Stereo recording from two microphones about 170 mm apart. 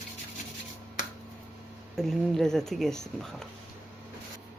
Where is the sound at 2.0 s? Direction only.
Centre (ahead or behind).